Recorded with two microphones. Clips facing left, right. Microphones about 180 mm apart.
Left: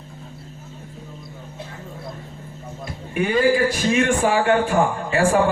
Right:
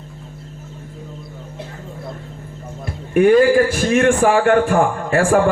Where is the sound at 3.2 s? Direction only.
50° right (ahead or behind).